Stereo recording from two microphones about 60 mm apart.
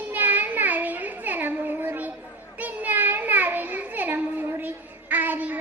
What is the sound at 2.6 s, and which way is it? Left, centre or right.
A child's voice, right.